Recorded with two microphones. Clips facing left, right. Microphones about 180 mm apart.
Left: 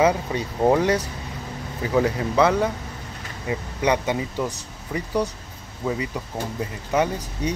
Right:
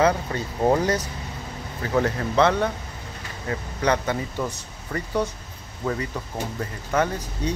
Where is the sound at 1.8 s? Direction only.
15° left (ahead or behind).